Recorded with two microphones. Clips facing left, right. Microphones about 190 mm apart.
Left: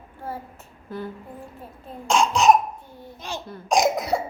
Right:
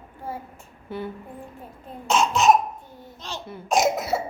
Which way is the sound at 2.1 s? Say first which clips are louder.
Left 1 dB; centre (ahead or behind).